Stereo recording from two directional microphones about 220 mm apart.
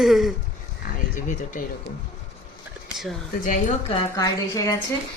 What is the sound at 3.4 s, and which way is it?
Speech, 35° left (ahead or behind).